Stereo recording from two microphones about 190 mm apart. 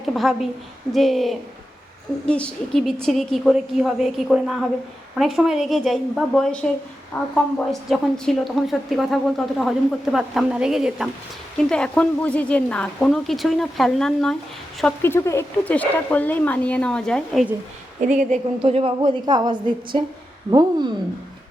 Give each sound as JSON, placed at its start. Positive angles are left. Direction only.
{"t": 0.0, "sound": "a woman's voice", "side_deg": 0}
{"t": 18.0, "sound": "a woman's voice", "side_deg": -40}